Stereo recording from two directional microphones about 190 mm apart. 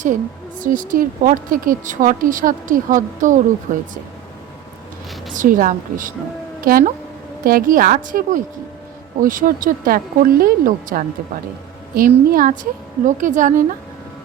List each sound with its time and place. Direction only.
0.6 s a woman's voice: 45° right (ahead or behind)
5.3 s a woman's voice: 45° right (ahead or behind)